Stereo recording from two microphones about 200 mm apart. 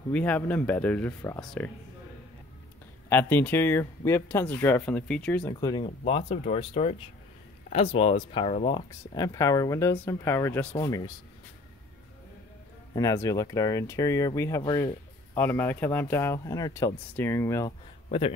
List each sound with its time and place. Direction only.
0.1 s speech: 5° left (ahead or behind)
3.1 s speech: 10° left (ahead or behind)
5.5 s speech: 20° left (ahead or behind)
12.9 s speech: 15° left (ahead or behind)